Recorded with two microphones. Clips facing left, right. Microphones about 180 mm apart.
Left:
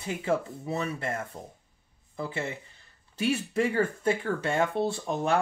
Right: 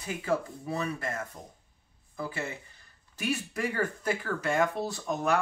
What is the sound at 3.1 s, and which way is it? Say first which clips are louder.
Speech: left 5 dB; 25° left (ahead or behind).